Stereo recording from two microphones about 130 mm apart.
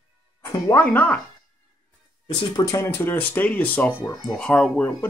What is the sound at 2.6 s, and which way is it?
Speech, 25° left (ahead or behind).